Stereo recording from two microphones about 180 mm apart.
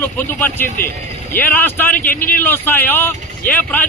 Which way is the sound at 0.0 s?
10° left (ahead or behind).